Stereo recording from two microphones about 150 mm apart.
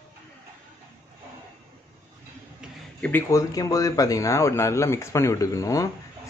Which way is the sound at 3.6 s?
25° left (ahead or behind).